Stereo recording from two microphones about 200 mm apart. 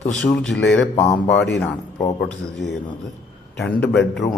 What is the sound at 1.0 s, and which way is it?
A man's voice, 15° left (ahead or behind).